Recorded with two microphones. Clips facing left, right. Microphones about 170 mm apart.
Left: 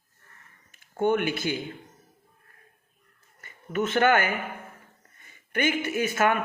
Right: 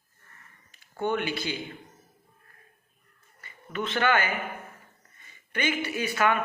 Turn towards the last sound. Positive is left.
turn(degrees=50)  # may be behind; listen again after turning